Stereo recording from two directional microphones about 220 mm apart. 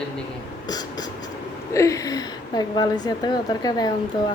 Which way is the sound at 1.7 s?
15° left (ahead or behind).